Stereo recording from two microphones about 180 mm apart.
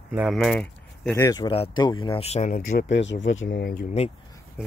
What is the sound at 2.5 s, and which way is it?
Speech, 50° left (ahead or behind).